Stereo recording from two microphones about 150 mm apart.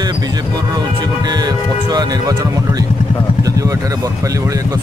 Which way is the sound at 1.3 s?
25° right (ahead or behind).